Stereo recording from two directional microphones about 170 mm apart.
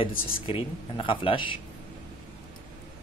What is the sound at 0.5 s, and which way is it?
Speech, 30° left (ahead or behind).